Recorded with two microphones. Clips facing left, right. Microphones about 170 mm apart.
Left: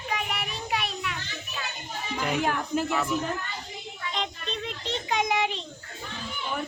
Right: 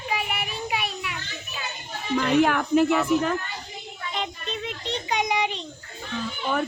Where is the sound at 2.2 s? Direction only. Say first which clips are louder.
Right 6 dB; 75° right (ahead or behind).